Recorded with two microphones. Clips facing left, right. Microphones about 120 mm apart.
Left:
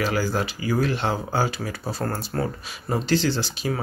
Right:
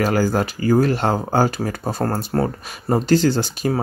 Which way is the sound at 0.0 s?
45° right (ahead or behind).